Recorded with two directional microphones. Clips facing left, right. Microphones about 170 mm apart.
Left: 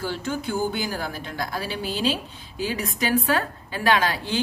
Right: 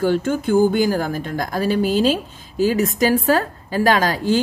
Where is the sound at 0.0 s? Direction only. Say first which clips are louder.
Right 9 dB; 50° right (ahead or behind).